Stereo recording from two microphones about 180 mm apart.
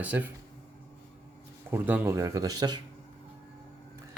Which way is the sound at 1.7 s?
10° right (ahead or behind).